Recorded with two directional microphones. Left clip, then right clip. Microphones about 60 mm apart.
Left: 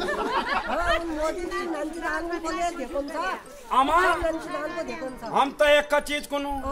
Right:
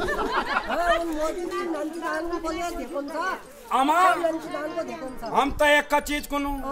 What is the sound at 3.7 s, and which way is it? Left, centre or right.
Speech, left.